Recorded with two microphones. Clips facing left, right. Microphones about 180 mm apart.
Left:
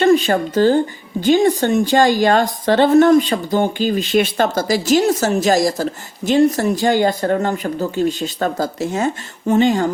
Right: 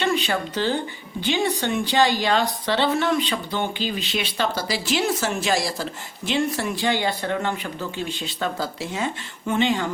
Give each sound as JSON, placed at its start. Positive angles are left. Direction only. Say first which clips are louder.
{"t": 0.0, "sound": "a woman's voice", "louder": "left 10 dB", "side_deg": 45}